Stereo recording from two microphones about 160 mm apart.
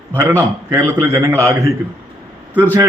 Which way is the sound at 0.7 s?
20° right (ahead or behind).